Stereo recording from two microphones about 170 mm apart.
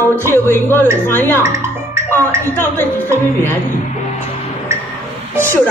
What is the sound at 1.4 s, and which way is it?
Music, 15° right (ahead or behind).